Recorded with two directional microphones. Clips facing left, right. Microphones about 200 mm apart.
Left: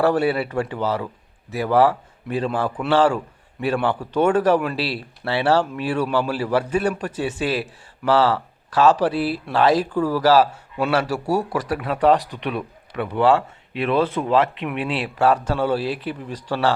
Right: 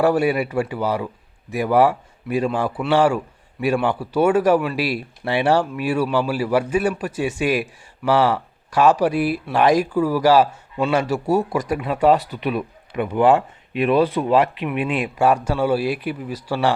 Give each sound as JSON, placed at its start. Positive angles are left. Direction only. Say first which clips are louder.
{"t": 0.0, "sound": "speech", "louder": "right 1 dB", "side_deg": -10}
{"t": 11.0, "sound": "a man's voice", "louder": "right 3 dB", "side_deg": 10}
{"t": 11.4, "sound": "speech", "louder": "right 2 dB", "side_deg": -10}